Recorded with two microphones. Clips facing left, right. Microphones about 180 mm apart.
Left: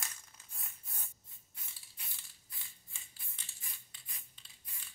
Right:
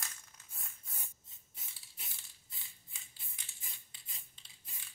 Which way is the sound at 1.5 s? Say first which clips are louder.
Right 1 dB; 20° right (ahead or behind).